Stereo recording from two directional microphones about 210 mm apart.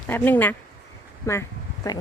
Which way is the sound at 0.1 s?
10° left (ahead or behind).